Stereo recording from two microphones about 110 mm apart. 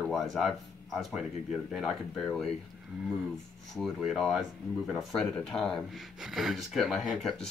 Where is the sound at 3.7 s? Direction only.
Centre (ahead or behind).